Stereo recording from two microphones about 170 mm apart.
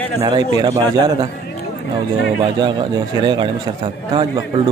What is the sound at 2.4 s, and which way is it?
A man's voice, 25° right (ahead or behind).